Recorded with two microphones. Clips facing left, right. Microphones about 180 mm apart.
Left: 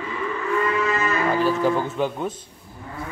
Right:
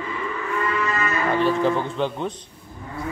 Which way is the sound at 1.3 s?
Centre (ahead or behind).